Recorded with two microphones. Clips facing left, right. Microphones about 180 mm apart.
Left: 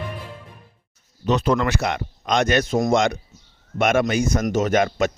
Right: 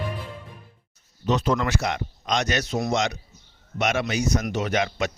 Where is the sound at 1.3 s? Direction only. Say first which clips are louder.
Left 3 dB; 65° left (ahead or behind).